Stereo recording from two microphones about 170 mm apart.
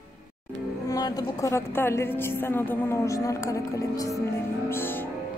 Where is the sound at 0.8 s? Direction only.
20° left (ahead or behind).